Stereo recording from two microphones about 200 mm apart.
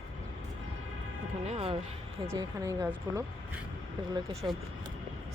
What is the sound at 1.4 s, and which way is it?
Speech, 30° right (ahead or behind).